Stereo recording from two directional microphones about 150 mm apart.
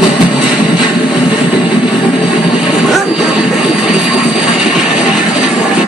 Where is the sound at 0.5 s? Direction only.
5° right (ahead or behind).